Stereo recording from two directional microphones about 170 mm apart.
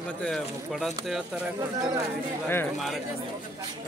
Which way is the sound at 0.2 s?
5° left (ahead or behind).